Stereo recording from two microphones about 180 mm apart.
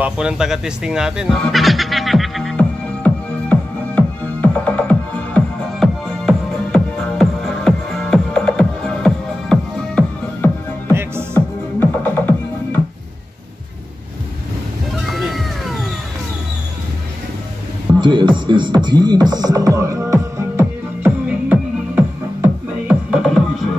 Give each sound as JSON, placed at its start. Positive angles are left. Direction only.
{"t": 0.0, "sound": "music", "side_deg": -5}
{"t": 10.9, "sound": "music", "side_deg": -15}
{"t": 11.3, "sound": "music", "side_deg": 10}
{"t": 15.1, "sound": "cat", "side_deg": 0}
{"t": 18.0, "sound": "music", "side_deg": -25}